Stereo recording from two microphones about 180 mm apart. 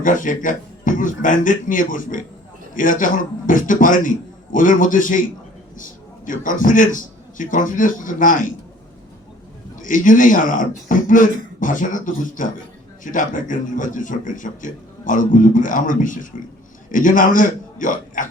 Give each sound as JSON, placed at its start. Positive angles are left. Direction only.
{"t": 0.0, "sound": "a man's voice", "side_deg": 45}
{"t": 9.7, "sound": "a man's voice", "side_deg": 45}